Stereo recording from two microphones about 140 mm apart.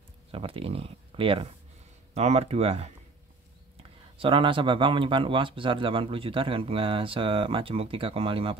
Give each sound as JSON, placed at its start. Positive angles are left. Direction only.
{"t": 0.3, "sound": "speech", "side_deg": -40}
{"t": 4.2, "sound": "speech", "side_deg": -40}